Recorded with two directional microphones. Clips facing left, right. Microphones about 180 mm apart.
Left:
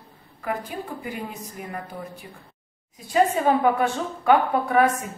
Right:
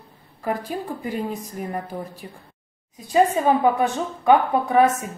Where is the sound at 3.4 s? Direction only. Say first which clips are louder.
Right 1 dB; 20° right (ahead or behind).